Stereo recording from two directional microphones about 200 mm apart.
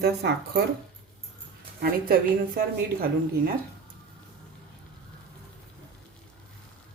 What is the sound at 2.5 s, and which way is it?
Speech, 50° right (ahead or behind).